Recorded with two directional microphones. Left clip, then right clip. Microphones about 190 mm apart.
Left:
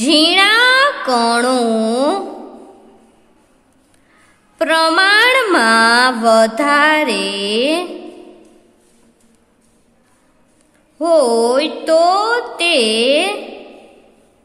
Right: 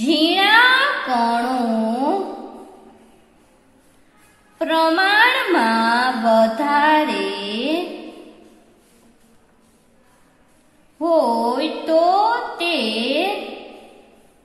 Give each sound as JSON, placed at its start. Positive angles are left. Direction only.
{"t": 0.0, "sound": "music", "side_deg": 50}
{"t": 4.6, "sound": "mantra", "side_deg": 50}
{"t": 11.0, "sound": "a woman's voice", "side_deg": 55}